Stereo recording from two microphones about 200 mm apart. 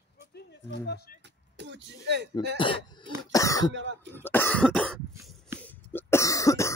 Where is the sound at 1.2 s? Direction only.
60° right (ahead or behind).